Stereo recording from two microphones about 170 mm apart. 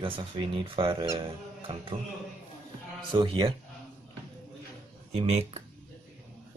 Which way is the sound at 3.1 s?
30° right (ahead or behind).